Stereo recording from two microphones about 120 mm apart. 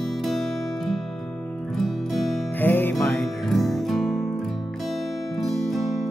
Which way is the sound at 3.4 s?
Centre (ahead or behind).